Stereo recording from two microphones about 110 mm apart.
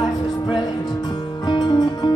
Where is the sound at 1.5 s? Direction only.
40° left (ahead or behind).